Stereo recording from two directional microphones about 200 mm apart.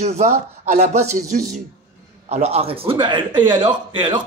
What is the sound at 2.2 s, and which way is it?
A man's voice, 30° right (ahead or behind).